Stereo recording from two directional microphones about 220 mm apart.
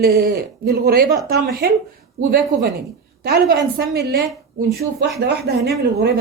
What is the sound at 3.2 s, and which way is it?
A woman's voice, 45° right (ahead or behind).